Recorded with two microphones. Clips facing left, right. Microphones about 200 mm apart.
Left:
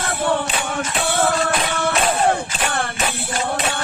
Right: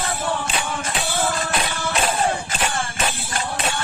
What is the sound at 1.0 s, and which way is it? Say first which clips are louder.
Music: left 5 dB; 60° left (ahead or behind).